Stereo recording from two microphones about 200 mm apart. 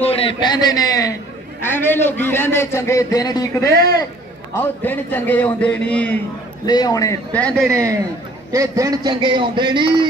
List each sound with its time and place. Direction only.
0.0 s a sound: 30° left (ahead or behind)
1.7 s a man's voice: 10° left (ahead or behind)
4.8 s a man's voice: 10° left (ahead or behind)
6.6 s a man's voice: 20° left (ahead or behind); by 7.7 s 5° left (ahead or behind)
7.7 s a man's voice: 15° right (ahead or behind)